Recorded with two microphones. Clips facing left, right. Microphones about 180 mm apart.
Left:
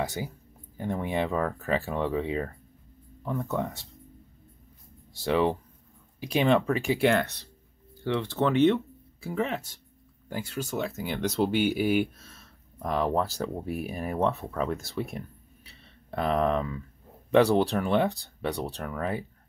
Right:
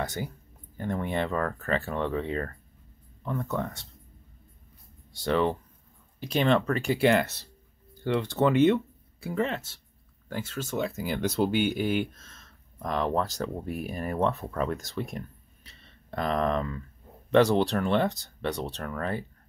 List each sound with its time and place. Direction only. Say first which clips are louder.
0.0 s speech: left 1 dB; 10° left (ahead or behind)
5.1 s speech: left 1 dB; 5° left (ahead or behind)
10.8 s speech: right 2 dB; 5° right (ahead or behind)